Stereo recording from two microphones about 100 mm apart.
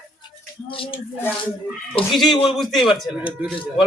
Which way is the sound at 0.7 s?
60° left (ahead or behind).